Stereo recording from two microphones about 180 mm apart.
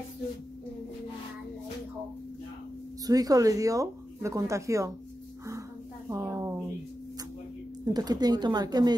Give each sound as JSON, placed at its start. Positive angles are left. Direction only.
{"t": 3.1, "sound": "speech", "side_deg": -20}
{"t": 6.0, "sound": "a sound", "side_deg": -15}
{"t": 7.8, "sound": "speech", "side_deg": -20}